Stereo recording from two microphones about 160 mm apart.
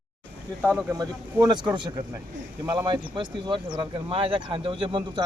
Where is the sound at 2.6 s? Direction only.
25° right (ahead or behind).